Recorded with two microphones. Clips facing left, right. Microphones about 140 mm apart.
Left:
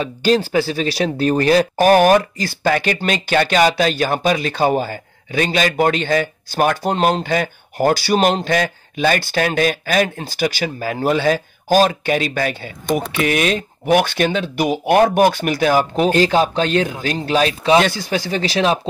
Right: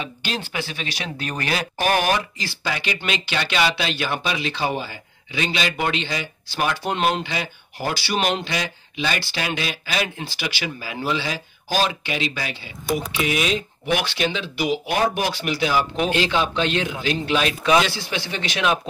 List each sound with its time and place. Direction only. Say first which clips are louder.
0.0 s speech: left 13 dB; 40° left (ahead or behind)